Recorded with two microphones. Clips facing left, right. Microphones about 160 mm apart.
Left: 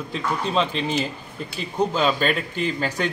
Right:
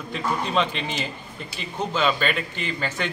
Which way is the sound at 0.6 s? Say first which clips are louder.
Left 4 dB; 35° left (ahead or behind).